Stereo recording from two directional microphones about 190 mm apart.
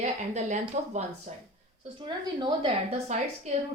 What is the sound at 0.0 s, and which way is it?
Speech, 40° right (ahead or behind).